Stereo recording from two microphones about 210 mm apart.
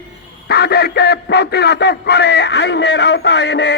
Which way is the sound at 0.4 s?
50° left (ahead or behind).